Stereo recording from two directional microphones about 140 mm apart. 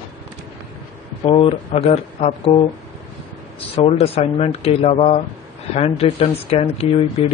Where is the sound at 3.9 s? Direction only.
50° left (ahead or behind).